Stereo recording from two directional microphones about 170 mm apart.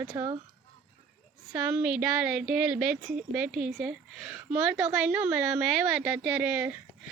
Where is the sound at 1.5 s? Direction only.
10° right (ahead or behind).